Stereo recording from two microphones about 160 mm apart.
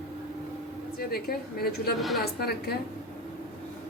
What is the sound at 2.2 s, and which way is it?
Speech, 75° left (ahead or behind).